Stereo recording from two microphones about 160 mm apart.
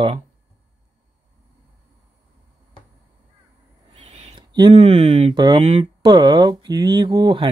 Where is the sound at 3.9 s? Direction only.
45° right (ahead or behind).